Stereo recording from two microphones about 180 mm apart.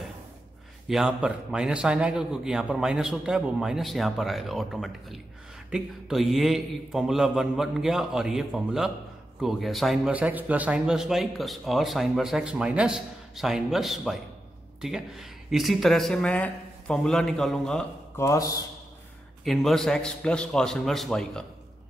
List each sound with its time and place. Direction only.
0.8 s a man's voice: 5° right (ahead or behind)
18.1 s speech: 15° left (ahead or behind)
19.4 s a man's voice: centre (ahead or behind)